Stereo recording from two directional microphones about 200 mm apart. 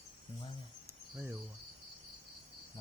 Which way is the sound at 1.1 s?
15° right (ahead or behind).